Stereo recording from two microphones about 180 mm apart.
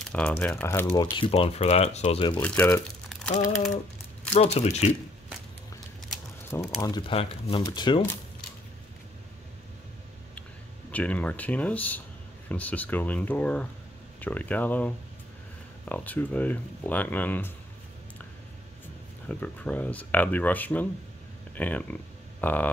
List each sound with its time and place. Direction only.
0.1 s speech: 5° left (ahead or behind)
0.8 s speech: 30° left (ahead or behind)
2.3 s speech: 10° left (ahead or behind)
4.3 s speech: 35° left (ahead or behind)
6.8 s speech: 25° left (ahead or behind)
10.9 s speech: 10° left (ahead or behind)
19.2 s speech: 5° left (ahead or behind)